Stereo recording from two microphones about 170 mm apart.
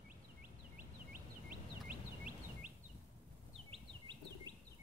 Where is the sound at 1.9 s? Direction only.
55° right (ahead or behind).